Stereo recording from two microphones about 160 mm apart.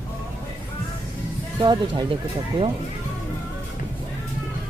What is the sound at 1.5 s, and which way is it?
Speech, 30° right (ahead or behind).